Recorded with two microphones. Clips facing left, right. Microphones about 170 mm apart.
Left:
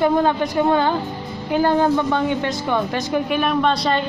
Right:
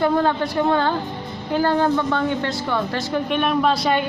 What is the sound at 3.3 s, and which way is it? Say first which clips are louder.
Speech: right 1 dB; centre (ahead or behind).